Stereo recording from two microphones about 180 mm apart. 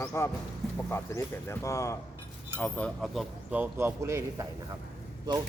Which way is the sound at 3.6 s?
15° right (ahead or behind).